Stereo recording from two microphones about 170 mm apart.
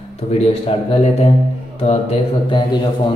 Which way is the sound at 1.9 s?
35° left (ahead or behind).